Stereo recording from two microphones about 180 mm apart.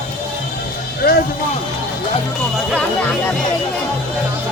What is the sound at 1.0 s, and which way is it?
Speech, 60° left (ahead or behind).